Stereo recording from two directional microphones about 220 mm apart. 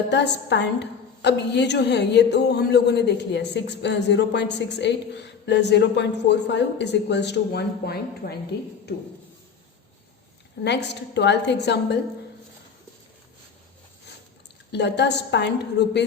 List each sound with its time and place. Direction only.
0.1 s a woman's voice: 50° left (ahead or behind)
8.2 s a woman's voice: 40° left (ahead or behind)
10.6 s a woman's voice: 50° left (ahead or behind)
14.7 s a woman's voice: 50° left (ahead or behind)